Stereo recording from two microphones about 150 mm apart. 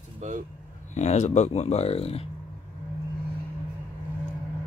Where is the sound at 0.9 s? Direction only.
50° left (ahead or behind).